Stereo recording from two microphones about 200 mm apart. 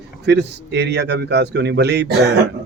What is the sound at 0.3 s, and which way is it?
Speech, 60° right (ahead or behind).